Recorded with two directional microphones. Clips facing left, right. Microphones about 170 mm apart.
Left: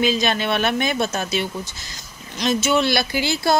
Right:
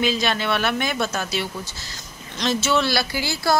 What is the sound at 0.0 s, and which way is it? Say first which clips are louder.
Speech: left 2 dB; 20° left (ahead or behind).